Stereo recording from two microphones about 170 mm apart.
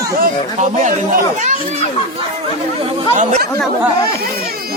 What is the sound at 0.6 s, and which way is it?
Speech, 45° right (ahead or behind).